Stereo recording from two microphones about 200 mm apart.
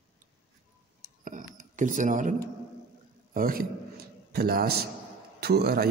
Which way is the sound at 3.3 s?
45° right (ahead or behind).